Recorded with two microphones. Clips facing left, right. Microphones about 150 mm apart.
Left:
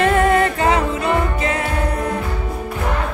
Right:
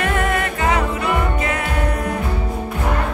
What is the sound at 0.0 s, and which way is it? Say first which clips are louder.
Music: left 6 dB; 30° left (ahead or behind).